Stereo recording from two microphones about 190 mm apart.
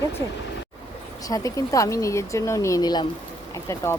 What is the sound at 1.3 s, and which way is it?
Speech, 15° left (ahead or behind).